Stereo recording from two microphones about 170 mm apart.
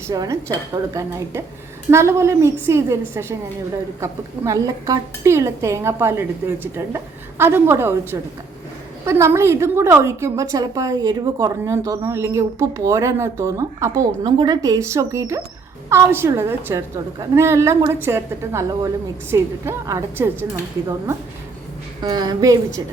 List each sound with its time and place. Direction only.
0.1 s a woman's voice: 20° right (ahead or behind)
4.0 s a woman's voice: 20° right (ahead or behind)